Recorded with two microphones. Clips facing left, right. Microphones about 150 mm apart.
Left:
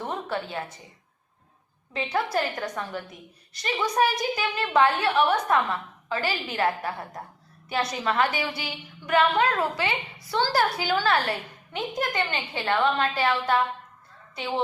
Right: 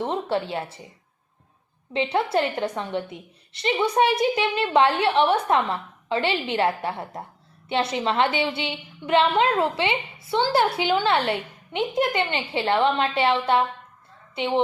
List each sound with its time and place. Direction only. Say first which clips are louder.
0.0 s a sound: right 5 dB; 30° right (ahead or behind)
0.5 s a woman's voice: right 4 dB; 30° right (ahead or behind)
1.9 s a woman's voice: right 4 dB; 25° right (ahead or behind)